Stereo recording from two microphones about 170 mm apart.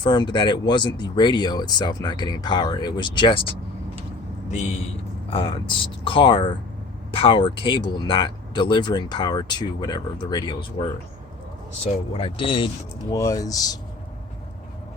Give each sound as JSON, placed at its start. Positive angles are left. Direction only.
{"t": 0.0, "sound": "speech", "side_deg": 25}
{"t": 5.3, "sound": "speech", "side_deg": 30}
{"t": 12.1, "sound": "speech", "side_deg": 30}
{"t": 13.1, "sound": "speech", "side_deg": 20}